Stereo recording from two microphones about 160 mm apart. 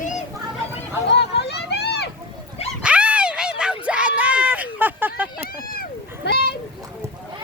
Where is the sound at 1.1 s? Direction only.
90° left.